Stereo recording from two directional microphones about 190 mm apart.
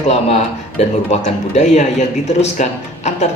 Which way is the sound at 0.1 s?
35° left (ahead or behind).